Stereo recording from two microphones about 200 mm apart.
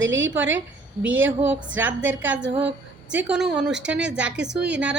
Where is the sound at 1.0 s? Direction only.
10° right (ahead or behind).